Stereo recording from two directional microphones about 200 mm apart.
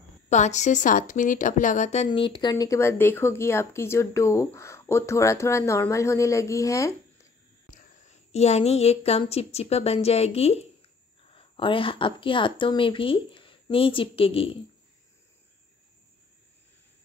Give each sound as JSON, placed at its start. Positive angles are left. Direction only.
{"t": 0.3, "sound": "a woman's voice", "side_deg": 35}
{"t": 2.0, "sound": "speech", "side_deg": 25}
{"t": 7.7, "sound": "a woman's voice", "side_deg": 35}